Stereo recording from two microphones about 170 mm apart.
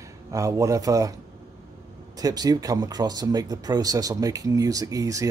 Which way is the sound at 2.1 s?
20° right (ahead or behind).